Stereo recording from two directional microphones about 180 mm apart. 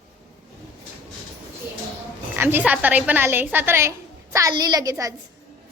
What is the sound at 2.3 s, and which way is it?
A woman's voice, 10° right (ahead or behind).